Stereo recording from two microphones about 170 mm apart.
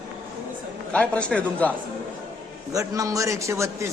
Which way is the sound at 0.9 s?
5° left (ahead or behind).